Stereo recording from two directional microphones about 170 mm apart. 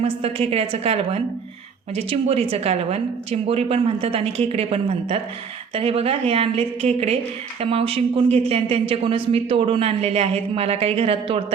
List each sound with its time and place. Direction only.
0.0 s speech: 35° right (ahead or behind)